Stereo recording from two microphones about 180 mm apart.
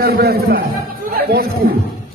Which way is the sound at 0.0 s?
60° right (ahead or behind).